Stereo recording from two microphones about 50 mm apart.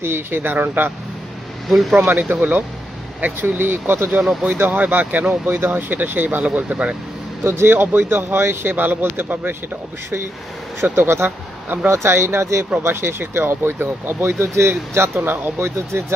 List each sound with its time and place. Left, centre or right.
0.0 s speech: right
1.7 s speech: centre
2.3 s speech: right
4.2 s speech: centre
4.5 s speech: right
7.4 s speech: right
7.7 s speech: right
10.8 s speech: right
12.8 s speech: right
15.6 s speech: right